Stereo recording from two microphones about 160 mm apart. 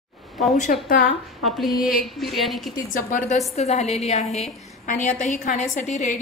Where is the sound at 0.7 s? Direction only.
60° left (ahead or behind).